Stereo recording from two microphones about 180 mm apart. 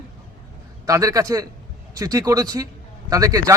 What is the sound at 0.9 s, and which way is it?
Speech, 20° right (ahead or behind).